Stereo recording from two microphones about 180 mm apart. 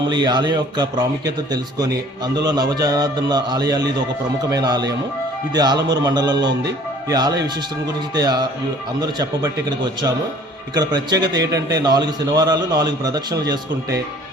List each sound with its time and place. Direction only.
0.1 s a man's voice: 25° right (ahead or behind)